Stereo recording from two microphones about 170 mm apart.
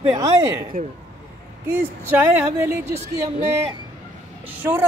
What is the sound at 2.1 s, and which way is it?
Speech, 10° right (ahead or behind).